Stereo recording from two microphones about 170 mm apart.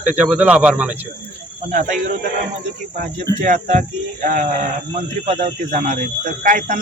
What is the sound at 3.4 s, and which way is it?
Speech, 50° right (ahead or behind).